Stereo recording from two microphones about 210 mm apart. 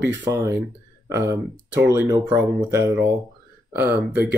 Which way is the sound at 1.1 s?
15° right (ahead or behind).